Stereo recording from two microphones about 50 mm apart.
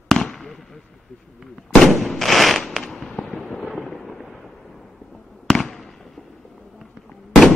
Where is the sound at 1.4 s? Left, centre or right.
Centre.